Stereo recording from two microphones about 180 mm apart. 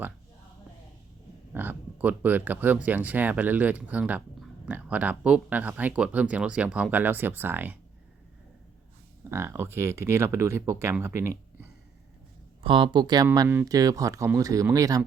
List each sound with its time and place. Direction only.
1.5 s speech: 10° right (ahead or behind)
9.3 s speech: 15° right (ahead or behind)
12.6 s speech: 30° right (ahead or behind)